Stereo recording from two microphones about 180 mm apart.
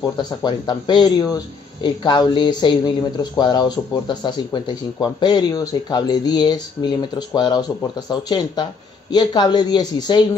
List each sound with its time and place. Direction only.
0.0 s speech: 25° left (ahead or behind)